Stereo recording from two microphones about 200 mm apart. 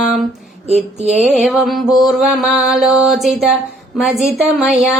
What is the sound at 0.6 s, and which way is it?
Speech, 30° right (ahead or behind).